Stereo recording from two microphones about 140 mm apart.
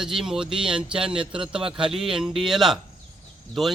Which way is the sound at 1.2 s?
35° right (ahead or behind).